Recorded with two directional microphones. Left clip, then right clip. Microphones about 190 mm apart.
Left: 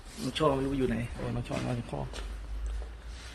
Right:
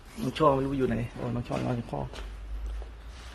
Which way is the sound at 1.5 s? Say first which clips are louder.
Right 4 dB; 30° right (ahead or behind).